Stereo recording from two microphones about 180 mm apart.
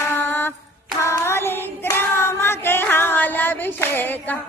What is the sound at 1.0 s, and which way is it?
Hands, 15° left (ahead or behind).